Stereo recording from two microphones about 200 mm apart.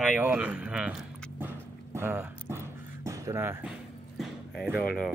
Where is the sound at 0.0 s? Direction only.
5° right (ahead or behind).